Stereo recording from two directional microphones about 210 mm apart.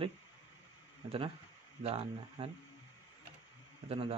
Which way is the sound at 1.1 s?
25° right (ahead or behind).